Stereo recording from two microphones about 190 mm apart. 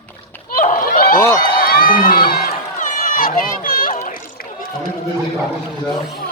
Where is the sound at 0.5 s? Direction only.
45° left (ahead or behind).